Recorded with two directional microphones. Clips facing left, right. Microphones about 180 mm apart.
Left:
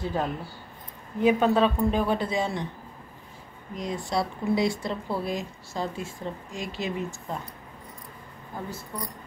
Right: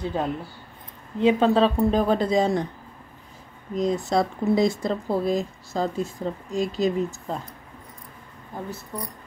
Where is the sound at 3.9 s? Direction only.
45° right (ahead or behind).